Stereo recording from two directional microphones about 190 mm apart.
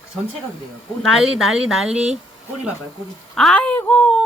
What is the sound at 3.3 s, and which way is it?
Speech, 5° left (ahead or behind).